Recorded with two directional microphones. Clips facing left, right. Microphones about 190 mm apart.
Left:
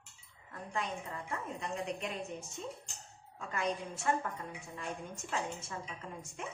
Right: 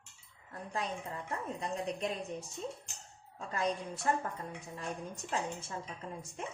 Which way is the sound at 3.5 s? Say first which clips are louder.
Right 1 dB; 35° right (ahead or behind).